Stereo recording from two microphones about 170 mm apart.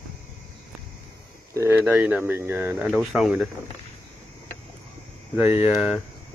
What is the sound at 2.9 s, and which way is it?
Speech, centre (ahead or behind).